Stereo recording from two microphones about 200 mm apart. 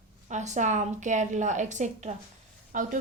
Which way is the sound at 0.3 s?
35° right (ahead or behind).